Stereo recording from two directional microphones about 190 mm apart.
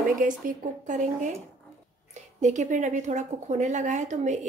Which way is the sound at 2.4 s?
40° right (ahead or behind).